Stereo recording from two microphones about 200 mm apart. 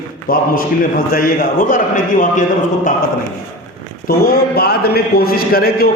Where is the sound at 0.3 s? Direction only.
45° left (ahead or behind).